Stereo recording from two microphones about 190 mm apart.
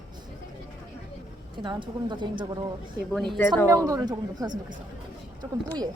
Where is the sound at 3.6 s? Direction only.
15° right (ahead or behind).